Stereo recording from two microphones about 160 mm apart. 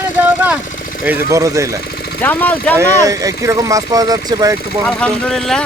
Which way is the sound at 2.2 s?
10° left (ahead or behind).